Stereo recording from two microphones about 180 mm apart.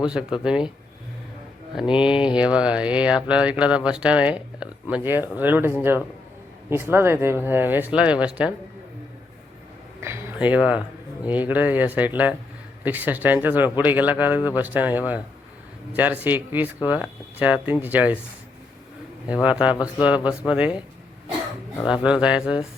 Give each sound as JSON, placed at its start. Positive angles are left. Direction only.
{"t": 0.0, "sound": "speech", "side_deg": -5}
{"t": 1.7, "sound": "speech", "side_deg": -5}
{"t": 10.0, "sound": "a sound", "side_deg": -10}
{"t": 11.2, "sound": "speech", "side_deg": -10}
{"t": 19.3, "sound": "speech", "side_deg": -5}
{"t": 22.0, "sound": "speech", "side_deg": -5}